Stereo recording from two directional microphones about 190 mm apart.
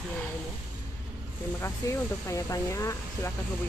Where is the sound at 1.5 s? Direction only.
15° left (ahead or behind).